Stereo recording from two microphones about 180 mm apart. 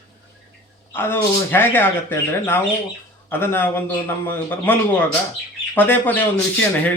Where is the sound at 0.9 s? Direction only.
10° left (ahead or behind).